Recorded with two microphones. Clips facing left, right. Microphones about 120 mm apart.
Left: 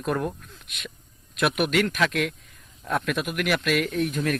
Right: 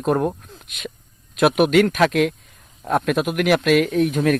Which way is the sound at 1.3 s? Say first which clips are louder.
Right 8 dB; 50° right (ahead or behind).